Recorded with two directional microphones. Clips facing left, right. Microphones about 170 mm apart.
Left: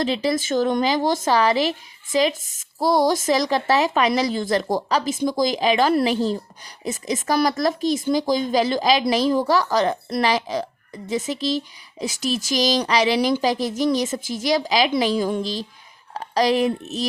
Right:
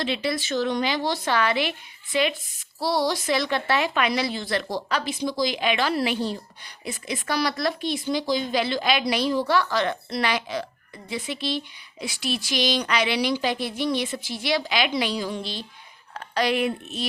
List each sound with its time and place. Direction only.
0.0 s speech: 40° left (ahead or behind)